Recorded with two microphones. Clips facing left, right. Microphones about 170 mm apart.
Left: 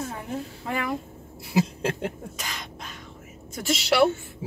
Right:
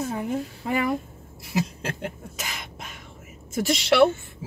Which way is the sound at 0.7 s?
5° right (ahead or behind).